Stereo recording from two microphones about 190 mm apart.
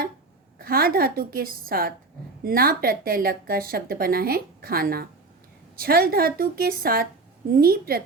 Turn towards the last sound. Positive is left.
turn(degrees=-50)  # may be behind; listen again after turning